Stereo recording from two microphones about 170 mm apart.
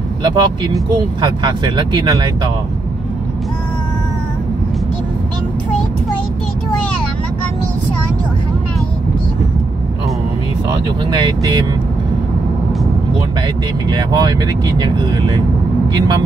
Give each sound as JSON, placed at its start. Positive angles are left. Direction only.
{"t": 0.2, "sound": "speech", "side_deg": -25}
{"t": 11.1, "sound": "speech", "side_deg": -25}
{"t": 13.8, "sound": "speech", "side_deg": -25}